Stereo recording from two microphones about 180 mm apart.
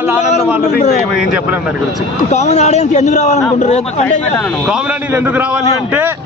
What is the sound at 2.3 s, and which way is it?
A man's voice, 40° left (ahead or behind).